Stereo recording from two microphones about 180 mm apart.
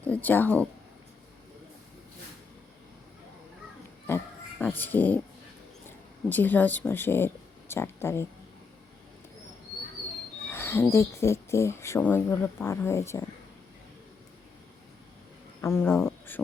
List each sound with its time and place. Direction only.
0.0 s speech: 10° left (ahead or behind)
4.8 s speech: 10° left (ahead or behind)
6.2 s speech: 10° left (ahead or behind)
10.5 s speech: 15° left (ahead or behind)
15.6 s speech: 10° left (ahead or behind)